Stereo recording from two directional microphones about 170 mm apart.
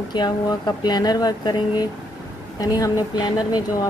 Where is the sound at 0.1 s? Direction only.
25° left (ahead or behind).